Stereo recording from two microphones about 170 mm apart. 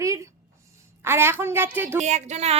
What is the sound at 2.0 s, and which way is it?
Music, 40° right (ahead or behind).